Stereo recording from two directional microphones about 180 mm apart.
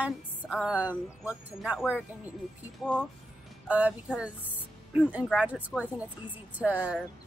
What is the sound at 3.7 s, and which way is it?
Music, 10° right (ahead or behind).